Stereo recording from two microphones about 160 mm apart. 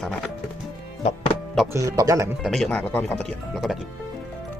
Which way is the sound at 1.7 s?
20° right (ahead or behind).